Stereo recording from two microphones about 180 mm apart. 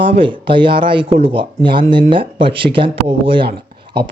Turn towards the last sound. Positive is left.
turn(degrees=-25)  # may be behind; listen again after turning